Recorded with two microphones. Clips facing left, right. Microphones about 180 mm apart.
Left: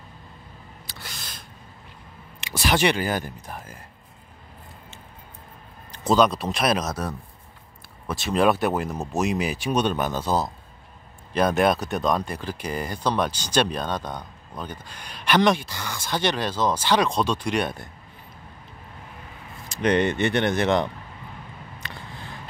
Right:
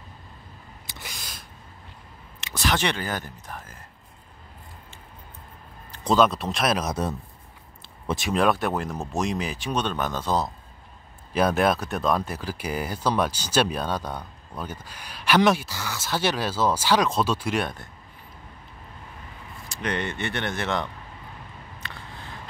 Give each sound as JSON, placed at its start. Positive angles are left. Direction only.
{"t": 0.8, "sound": "a sound", "side_deg": -20}
{"t": 2.4, "sound": "speech", "side_deg": 10}
{"t": 6.0, "sound": "speech", "side_deg": 0}
{"t": 6.9, "sound": "speech", "side_deg": -25}
{"t": 8.3, "sound": "speech", "side_deg": 5}
{"t": 19.7, "sound": "speech", "side_deg": 20}